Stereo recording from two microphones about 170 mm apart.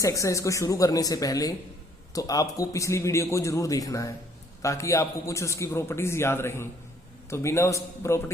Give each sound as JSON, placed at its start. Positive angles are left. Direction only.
{"t": 0.0, "sound": "a man's voice", "side_deg": 20}